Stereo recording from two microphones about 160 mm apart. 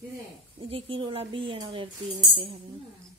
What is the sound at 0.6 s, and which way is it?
Speech, 35° right (ahead or behind).